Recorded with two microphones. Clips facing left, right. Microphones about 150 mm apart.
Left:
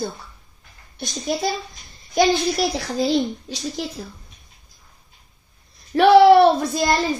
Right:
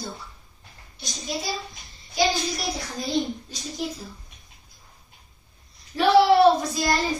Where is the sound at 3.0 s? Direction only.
80° left.